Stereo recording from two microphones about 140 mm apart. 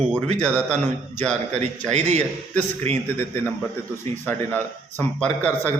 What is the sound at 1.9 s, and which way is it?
A man's voice, 55° right (ahead or behind).